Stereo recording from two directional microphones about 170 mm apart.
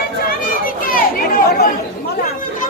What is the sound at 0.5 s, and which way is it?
Chatter, 55° left (ahead or behind).